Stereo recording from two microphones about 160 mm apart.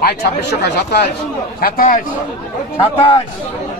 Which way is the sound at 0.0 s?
90° left.